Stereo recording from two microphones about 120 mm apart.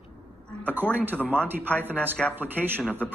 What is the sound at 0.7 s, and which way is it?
Speech, 15° right (ahead or behind).